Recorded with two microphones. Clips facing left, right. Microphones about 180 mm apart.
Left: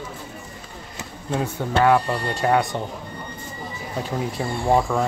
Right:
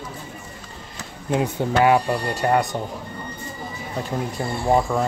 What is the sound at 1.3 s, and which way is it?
Speech, 20° right (ahead or behind).